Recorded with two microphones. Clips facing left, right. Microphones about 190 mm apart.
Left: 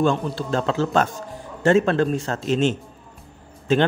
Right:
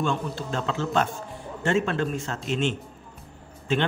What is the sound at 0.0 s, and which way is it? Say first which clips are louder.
A man's voice: left 6 dB; 40° left (ahead or behind).